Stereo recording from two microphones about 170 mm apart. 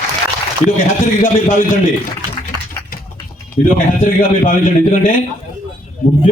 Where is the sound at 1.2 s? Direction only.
55° left (ahead or behind).